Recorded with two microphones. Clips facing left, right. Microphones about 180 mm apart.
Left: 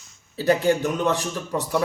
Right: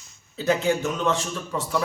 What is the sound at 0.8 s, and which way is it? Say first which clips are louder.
Speech: left 2 dB; 15° left (ahead or behind).